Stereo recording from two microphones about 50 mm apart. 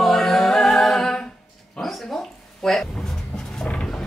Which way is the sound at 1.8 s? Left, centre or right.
Centre.